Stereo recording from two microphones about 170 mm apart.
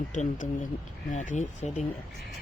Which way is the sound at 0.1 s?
50° left (ahead or behind).